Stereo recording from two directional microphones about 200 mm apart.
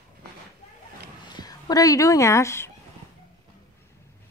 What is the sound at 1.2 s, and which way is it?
Speech, 20° left (ahead or behind).